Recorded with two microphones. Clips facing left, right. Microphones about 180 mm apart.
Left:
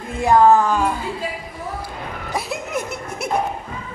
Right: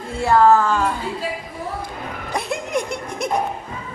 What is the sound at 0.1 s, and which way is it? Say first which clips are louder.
Speech: left 1 dB; 15° left (ahead or behind).